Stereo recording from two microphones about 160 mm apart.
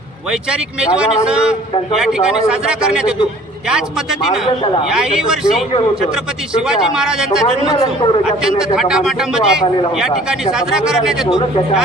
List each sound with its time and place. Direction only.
0.3 s a man's voice: 5° right (ahead or behind)
4.4 s a man's voice: 30° left (ahead or behind)
4.9 s a man's voice: 5° right (ahead or behind)
6.7 s a man's voice: 5° right (ahead or behind)
7.4 s a man's voice: 35° left (ahead or behind)
8.2 s a man's voice: 5° right (ahead or behind)